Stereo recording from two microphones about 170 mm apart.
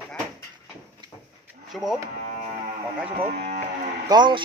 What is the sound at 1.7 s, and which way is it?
Speech, centre (ahead or behind).